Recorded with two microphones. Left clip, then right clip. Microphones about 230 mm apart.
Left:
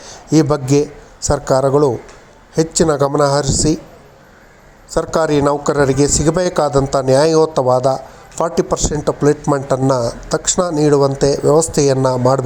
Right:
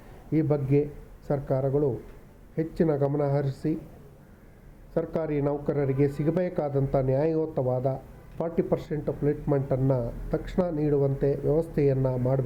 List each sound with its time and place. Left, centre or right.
0.3 s a man's voice: left
4.9 s a man's voice: left